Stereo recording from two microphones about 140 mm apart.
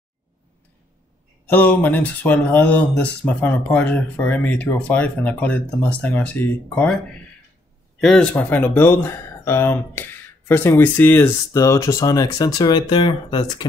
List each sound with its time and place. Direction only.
1.5 s speech: 15° left (ahead or behind)
8.0 s speech: 5° left (ahead or behind); by 13.7 s 30° left (ahead or behind)